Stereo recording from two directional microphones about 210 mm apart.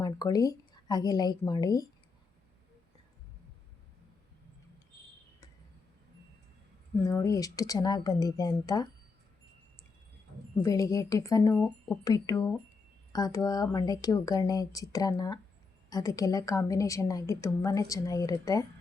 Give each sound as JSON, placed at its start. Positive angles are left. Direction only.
{"t": 0.0, "sound": "a woman's voice", "side_deg": 15}
{"t": 7.1, "sound": "a woman's voice", "side_deg": 15}
{"t": 10.6, "sound": "a woman's voice", "side_deg": 15}